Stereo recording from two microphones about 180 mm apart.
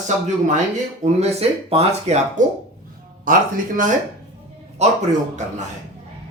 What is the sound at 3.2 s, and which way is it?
Speech, 50° right (ahead or behind).